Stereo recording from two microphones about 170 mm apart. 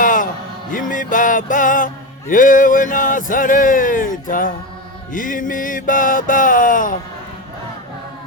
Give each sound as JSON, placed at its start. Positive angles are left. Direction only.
{"t": 0.0, "sound": "music", "side_deg": 50}
{"t": 0.7, "sound": "speech", "side_deg": 50}